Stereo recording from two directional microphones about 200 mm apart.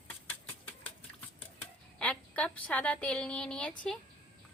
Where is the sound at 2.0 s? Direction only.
5° left (ahead or behind).